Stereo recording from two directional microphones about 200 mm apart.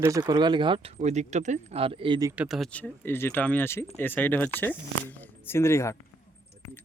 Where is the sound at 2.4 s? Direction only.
Centre (ahead or behind).